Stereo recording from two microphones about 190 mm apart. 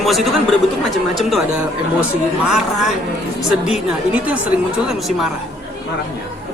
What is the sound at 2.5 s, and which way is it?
Speech, centre (ahead or behind).